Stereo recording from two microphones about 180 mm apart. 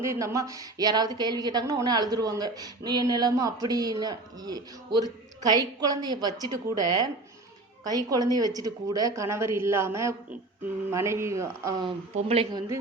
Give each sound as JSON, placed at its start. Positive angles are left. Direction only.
{"t": 0.0, "sound": "a woman's voice", "side_deg": -15}
{"t": 12.1, "sound": "a woman's voice", "side_deg": -35}
{"t": 12.5, "sound": "a woman's voice", "side_deg": -20}